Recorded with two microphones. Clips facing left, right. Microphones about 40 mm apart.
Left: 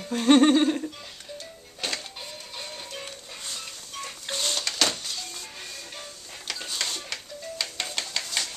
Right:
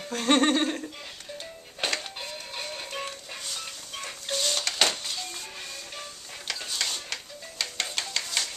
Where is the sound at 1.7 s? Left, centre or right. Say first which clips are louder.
Right 3 dB; right.